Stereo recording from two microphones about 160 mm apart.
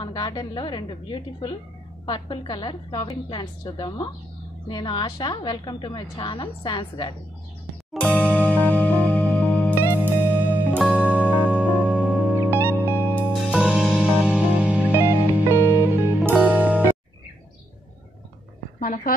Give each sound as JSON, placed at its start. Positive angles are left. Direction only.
{"t": 0.0, "sound": "a woman's voice", "side_deg": 25}
{"t": 7.9, "sound": "music", "side_deg": 5}
{"t": 9.9, "sound": "music", "side_deg": -10}
{"t": 11.2, "sound": "music", "side_deg": 10}
{"t": 12.1, "sound": "music", "side_deg": -15}
{"t": 13.2, "sound": "music", "side_deg": 0}
{"t": 15.5, "sound": "music", "side_deg": 15}
{"t": 16.3, "sound": "music", "side_deg": -10}
{"t": 18.8, "sound": "a woman's voice", "side_deg": 65}